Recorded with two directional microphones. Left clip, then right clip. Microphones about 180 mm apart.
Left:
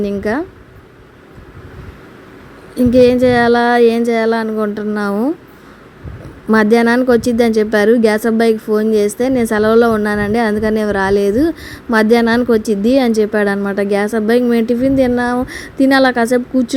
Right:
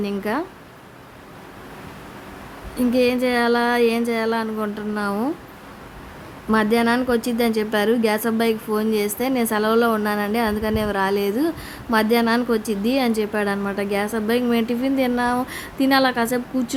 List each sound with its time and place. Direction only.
0.0 s a woman's voice: 20° left (ahead or behind)
2.7 s a woman's voice: 25° left (ahead or behind)
6.5 s a woman's voice: 30° left (ahead or behind)